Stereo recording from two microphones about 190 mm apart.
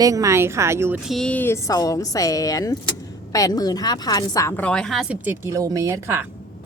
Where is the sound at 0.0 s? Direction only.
15° right (ahead or behind).